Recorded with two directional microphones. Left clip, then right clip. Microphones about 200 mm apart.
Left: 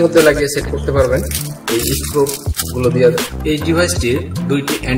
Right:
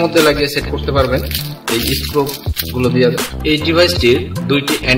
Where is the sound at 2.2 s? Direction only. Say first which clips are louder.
Left 2 dB; 45° right (ahead or behind).